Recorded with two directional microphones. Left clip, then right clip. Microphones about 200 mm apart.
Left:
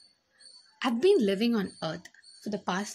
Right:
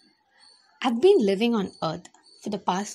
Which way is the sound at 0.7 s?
10° right (ahead or behind).